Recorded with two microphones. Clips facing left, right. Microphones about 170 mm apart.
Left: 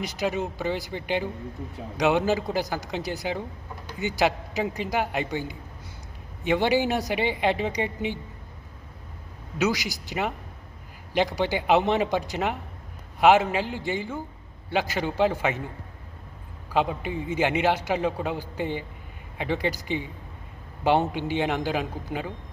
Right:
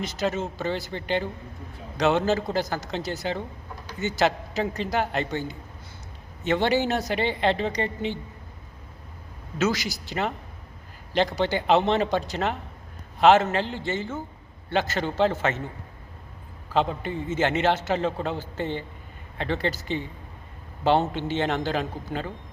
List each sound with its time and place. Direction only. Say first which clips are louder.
0.0 s a man's voice: even; 15° left (ahead or behind)
9.6 s a man's voice: even; 15° left (ahead or behind)
16.7 s a man's voice: even; 10° left (ahead or behind)